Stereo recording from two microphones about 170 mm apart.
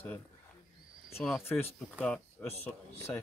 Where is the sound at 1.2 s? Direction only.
Centre (ahead or behind).